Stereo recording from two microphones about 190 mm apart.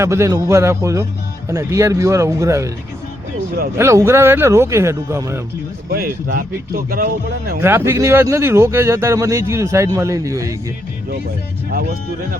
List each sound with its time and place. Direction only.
0.0 s speech: 15° right (ahead or behind)
3.8 s speech: 15° right (ahead or behind)
5.9 s speech: 50° right (ahead or behind)
7.6 s speech: 10° right (ahead or behind)